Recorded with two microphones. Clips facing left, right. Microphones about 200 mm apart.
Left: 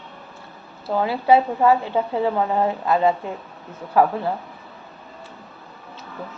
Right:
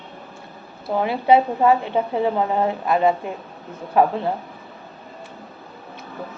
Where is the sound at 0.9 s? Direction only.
20° right (ahead or behind).